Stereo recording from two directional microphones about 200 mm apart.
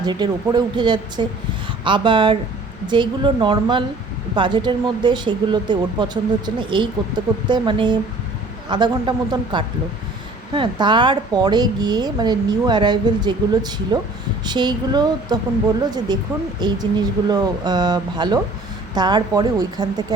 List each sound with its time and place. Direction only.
0.0 s a woman's voice: 20° right (ahead or behind)